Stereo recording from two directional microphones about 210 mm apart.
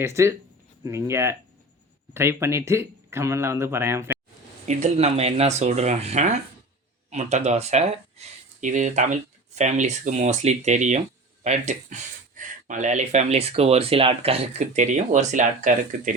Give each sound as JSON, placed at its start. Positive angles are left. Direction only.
{"t": 0.0, "sound": "speech", "side_deg": -10}
{"t": 4.6, "sound": "speech", "side_deg": -35}